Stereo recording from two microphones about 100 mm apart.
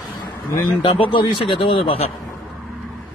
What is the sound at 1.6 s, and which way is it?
Speech, 75° left (ahead or behind).